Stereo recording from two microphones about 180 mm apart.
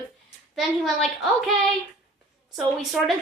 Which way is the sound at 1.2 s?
Centre (ahead or behind).